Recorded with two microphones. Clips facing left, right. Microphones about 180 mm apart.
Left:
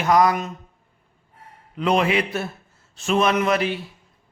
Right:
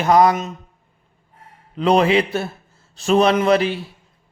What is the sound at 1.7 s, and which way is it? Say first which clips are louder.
A man's voice: right 5 dB; 30° right (ahead or behind).